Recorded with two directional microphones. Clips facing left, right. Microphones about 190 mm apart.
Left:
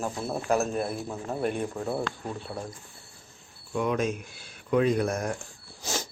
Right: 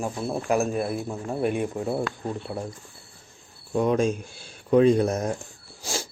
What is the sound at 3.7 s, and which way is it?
Speech, 35° right (ahead or behind).